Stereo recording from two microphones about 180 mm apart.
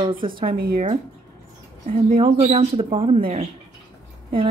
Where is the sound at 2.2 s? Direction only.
30° right (ahead or behind).